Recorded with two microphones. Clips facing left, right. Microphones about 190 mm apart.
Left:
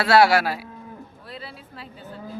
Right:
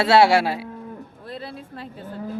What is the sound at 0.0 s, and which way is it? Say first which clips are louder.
Speech: right 1 dB; 25° right (ahead or behind).